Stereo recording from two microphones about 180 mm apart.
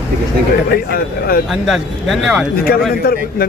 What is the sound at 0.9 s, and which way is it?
Speech, 55° left (ahead or behind).